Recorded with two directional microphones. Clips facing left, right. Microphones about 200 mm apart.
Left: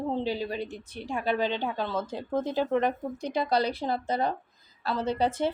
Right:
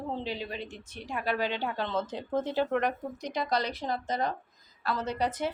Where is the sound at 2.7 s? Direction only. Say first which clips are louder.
Left 3 dB; 25° left (ahead or behind).